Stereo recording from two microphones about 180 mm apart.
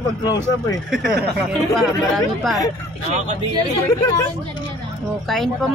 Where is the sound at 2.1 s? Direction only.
Centre (ahead or behind).